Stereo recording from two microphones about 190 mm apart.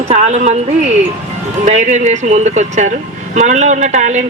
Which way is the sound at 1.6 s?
40° right (ahead or behind).